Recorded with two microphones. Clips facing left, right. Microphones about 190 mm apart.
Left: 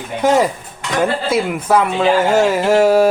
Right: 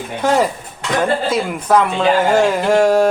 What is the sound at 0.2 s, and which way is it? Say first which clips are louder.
Speech: left 2 dB; 10° left (ahead or behind).